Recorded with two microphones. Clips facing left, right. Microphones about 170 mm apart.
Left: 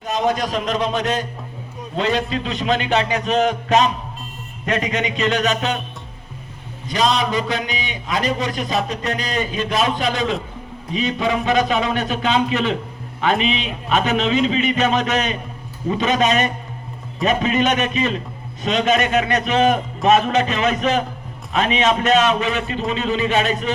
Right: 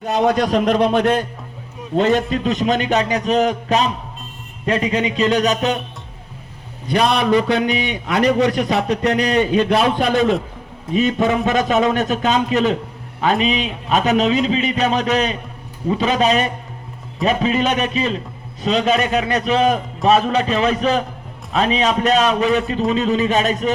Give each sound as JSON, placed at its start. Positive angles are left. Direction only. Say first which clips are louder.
{"t": 0.0, "sound": "a man's voice", "louder": "right 4 dB", "side_deg": -65}
{"t": 6.8, "sound": "a man's voice", "louder": "right 3 dB", "side_deg": -60}